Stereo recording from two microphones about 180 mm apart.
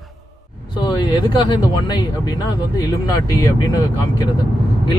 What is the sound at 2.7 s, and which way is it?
Speech, 20° left (ahead or behind).